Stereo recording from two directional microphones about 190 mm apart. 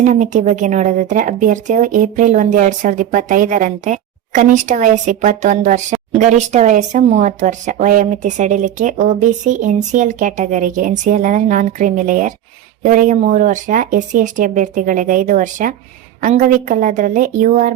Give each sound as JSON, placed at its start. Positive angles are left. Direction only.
{"t": 0.0, "sound": "speech", "side_deg": -40}